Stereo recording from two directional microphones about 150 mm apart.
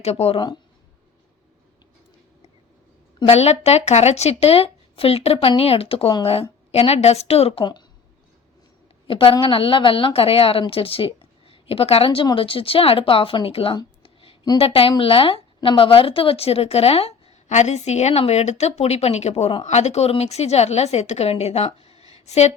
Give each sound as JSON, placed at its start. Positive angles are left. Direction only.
{"t": 0.0, "sound": "a woman's voice", "side_deg": 45}
{"t": 3.2, "sound": "a woman's voice", "side_deg": 40}
{"t": 7.6, "sound": "speech", "side_deg": 30}
{"t": 9.0, "sound": "a woman's voice", "side_deg": 35}
{"t": 14.0, "sound": "a sound", "side_deg": 40}
{"t": 14.6, "sound": "a woman's voice", "side_deg": 40}
{"t": 22.1, "sound": "a sound", "side_deg": 45}